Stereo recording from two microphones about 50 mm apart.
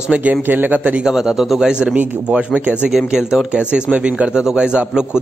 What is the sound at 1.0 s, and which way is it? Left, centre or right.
Speech, centre.